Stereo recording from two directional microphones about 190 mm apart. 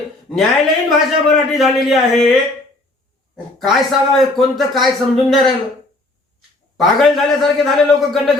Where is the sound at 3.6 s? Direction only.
Centre (ahead or behind).